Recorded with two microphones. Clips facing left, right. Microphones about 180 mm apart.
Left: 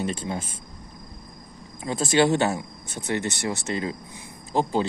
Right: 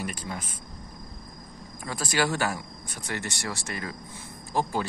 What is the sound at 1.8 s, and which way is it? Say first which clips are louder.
Speech: left 7 dB; 20° left (ahead or behind).